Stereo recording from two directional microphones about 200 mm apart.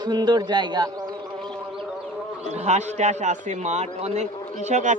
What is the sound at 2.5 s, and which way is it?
A man's voice, 35° right (ahead or behind).